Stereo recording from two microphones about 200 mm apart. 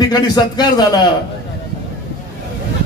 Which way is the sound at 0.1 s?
20° left (ahead or behind).